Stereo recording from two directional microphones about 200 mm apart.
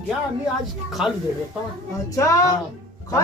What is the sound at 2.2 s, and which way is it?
Speech, 15° left (ahead or behind).